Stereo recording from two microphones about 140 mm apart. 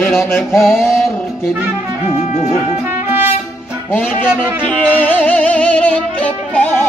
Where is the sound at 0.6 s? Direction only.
Centre (ahead or behind).